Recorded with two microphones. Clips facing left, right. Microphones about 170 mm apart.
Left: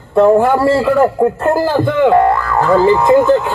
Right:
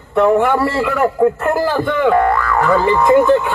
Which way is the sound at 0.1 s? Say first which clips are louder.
Left 3 dB; 30° left (ahead or behind).